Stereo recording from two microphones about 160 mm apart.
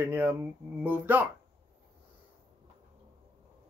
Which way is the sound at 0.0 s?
10° right (ahead or behind).